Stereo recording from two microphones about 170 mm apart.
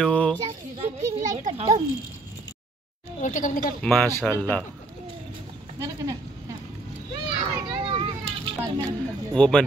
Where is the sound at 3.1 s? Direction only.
50° left (ahead or behind).